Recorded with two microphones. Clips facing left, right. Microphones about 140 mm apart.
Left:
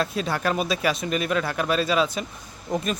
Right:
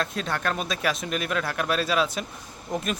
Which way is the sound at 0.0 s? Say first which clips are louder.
Left 3 dB; 5° left (ahead or behind).